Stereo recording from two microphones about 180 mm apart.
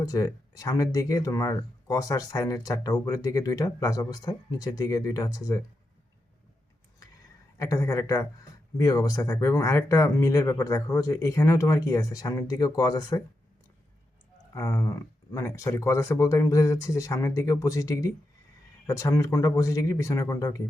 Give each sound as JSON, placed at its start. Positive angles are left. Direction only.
{"t": 0.0, "sound": "speech", "side_deg": 20}
{"t": 7.6, "sound": "speech", "side_deg": 20}
{"t": 14.5, "sound": "speech", "side_deg": 15}